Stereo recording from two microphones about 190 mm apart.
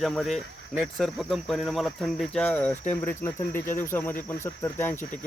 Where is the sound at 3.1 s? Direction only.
10° left (ahead or behind).